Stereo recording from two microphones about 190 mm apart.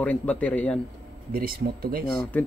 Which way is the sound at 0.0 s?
5° left (ahead or behind).